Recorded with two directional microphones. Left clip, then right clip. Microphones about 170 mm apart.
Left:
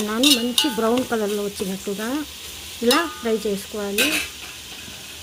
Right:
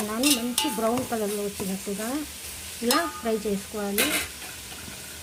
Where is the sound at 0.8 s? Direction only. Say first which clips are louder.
Left 5 dB; 30° left (ahead or behind).